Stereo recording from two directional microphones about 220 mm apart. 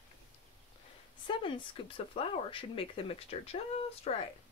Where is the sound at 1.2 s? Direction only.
25° left (ahead or behind).